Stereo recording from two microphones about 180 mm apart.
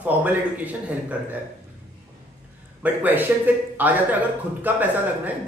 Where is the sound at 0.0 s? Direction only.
10° right (ahead or behind).